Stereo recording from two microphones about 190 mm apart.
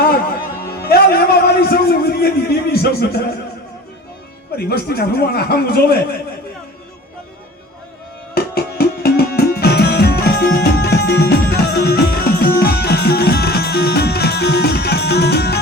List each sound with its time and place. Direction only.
0.0 s music: 50° left (ahead or behind)
4.5 s a man's voice: 55° left (ahead or behind)
8.4 s music: 55° left (ahead or behind)